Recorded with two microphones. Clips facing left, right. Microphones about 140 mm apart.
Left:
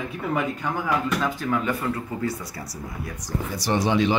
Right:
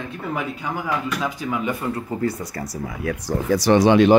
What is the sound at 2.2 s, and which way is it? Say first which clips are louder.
Speech: right 4 dB; 50° right (ahead or behind).